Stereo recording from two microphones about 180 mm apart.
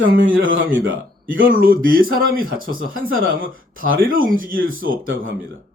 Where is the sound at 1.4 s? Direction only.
50° right (ahead or behind).